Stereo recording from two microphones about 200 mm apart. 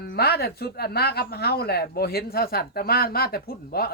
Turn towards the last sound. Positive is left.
turn(degrees=50)  # may be behind; listen again after turning